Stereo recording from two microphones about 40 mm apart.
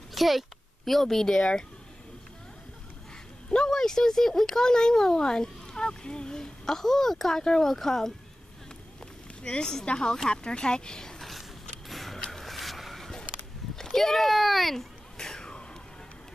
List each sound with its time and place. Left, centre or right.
0.1 s speech: centre; by 1.6 s left
3.4 s speech: centre
9.4 s speech: left
11.1 s a sound: centre